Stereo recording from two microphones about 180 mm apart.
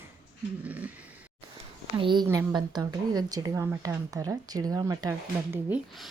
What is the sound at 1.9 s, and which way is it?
A woman's voice, 25° right (ahead or behind).